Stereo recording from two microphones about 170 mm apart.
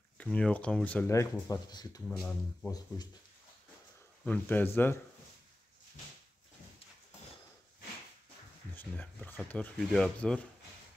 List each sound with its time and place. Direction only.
0.2 s speech: 10° left (ahead or behind); by 2.0 s 25° left (ahead or behind)
2.0 s speech: 10° left (ahead or behind)
4.2 s speech: 10° left (ahead or behind)
8.7 s speech: 10° left (ahead or behind)